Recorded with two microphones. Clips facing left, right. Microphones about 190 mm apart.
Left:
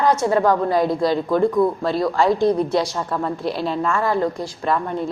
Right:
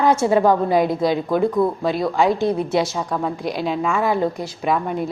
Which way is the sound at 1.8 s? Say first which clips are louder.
Even; 20° right (ahead or behind).